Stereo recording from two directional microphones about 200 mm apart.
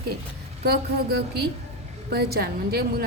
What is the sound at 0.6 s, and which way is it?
Speech, 55° right (ahead or behind).